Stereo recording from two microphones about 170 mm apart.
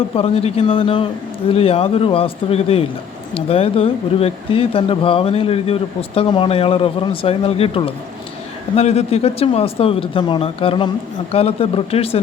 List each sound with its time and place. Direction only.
0.2 s speech: 35° left (ahead or behind)